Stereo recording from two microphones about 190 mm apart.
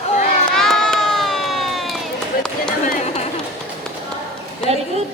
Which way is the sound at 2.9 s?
35° left (ahead or behind).